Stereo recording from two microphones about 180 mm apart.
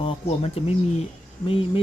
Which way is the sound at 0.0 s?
35° left (ahead or behind).